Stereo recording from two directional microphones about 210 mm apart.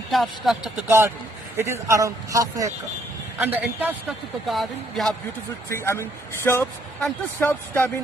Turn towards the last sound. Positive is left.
turn(degrees=10)  # may be behind; listen again after turning